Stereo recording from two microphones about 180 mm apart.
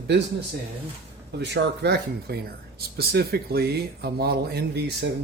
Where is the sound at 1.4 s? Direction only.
70° right (ahead or behind).